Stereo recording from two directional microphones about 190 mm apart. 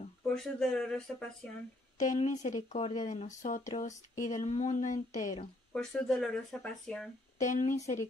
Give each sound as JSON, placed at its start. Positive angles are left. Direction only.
{"t": 0.3, "sound": "speech", "side_deg": 0}
{"t": 2.0, "sound": "speech", "side_deg": 40}
{"t": 5.7, "sound": "speech", "side_deg": 5}
{"t": 7.3, "sound": "speech", "side_deg": 40}